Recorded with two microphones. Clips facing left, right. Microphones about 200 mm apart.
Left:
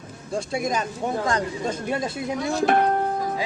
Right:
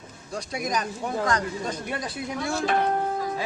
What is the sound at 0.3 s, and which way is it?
Speech, 25° left (ahead or behind).